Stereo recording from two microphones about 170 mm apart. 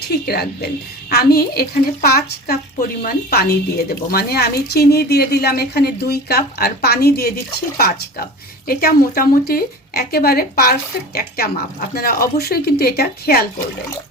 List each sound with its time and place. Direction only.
0.3 s speech: 65° left (ahead or behind)
8.6 s speech: 60° left (ahead or behind)